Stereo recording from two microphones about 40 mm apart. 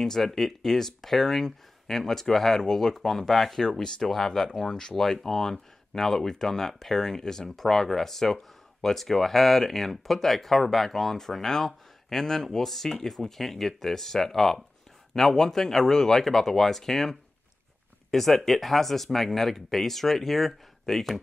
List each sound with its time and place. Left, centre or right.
0.0 s speech: centre
3.6 s speech: centre